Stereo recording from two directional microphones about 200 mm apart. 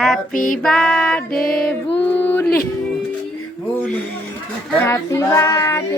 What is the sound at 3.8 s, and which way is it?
Speech, 5° left (ahead or behind).